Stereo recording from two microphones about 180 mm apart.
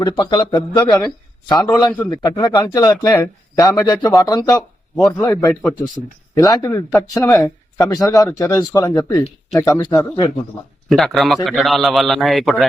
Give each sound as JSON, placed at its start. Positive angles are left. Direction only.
{"t": 0.0, "sound": "speech", "side_deg": 20}
{"t": 4.9, "sound": "a man's voice", "side_deg": 5}
{"t": 6.3, "sound": "speech", "side_deg": 15}
{"t": 10.9, "sound": "a man's voice", "side_deg": 0}